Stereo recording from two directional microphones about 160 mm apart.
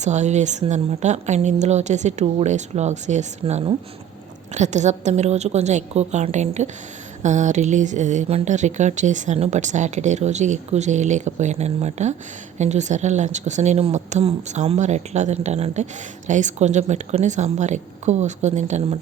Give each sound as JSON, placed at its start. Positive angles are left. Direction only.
{"t": 0.0, "sound": "speech", "side_deg": -45}